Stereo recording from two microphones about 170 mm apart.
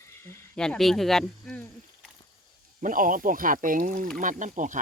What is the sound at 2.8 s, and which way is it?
Speech, 50° right (ahead or behind).